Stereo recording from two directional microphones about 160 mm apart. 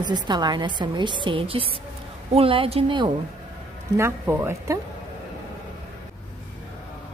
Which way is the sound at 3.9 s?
15° right (ahead or behind).